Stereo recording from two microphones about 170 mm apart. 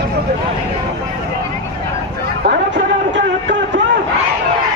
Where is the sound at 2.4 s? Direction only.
90° right.